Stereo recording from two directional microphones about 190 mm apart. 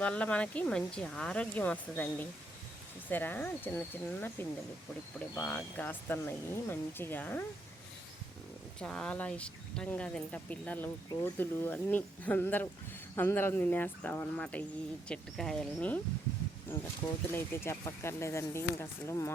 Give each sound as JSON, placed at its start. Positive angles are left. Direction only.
{"t": 0.0, "sound": "speech", "side_deg": 5}
{"t": 5.3, "sound": "speech", "side_deg": 10}
{"t": 8.8, "sound": "speech", "side_deg": 5}
{"t": 16.7, "sound": "speech", "side_deg": 15}